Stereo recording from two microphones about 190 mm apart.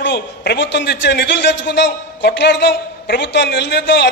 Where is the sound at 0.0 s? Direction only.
60° left (ahead or behind).